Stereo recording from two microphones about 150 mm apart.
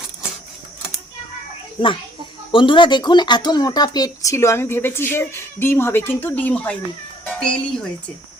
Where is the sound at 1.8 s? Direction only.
30° left (ahead or behind); by 7.8 s 5° left (ahead or behind).